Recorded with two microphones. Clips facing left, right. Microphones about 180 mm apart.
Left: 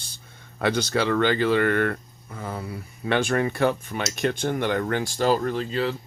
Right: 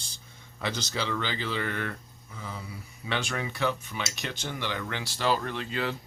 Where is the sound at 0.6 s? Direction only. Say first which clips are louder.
Left 9 dB; 55° left (ahead or behind).